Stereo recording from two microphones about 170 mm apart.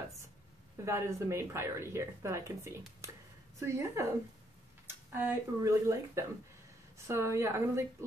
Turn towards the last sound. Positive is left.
turn(degrees=-15)  # may be behind; listen again after turning